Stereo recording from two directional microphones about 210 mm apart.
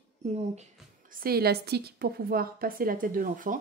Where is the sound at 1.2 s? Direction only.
45° right (ahead or behind).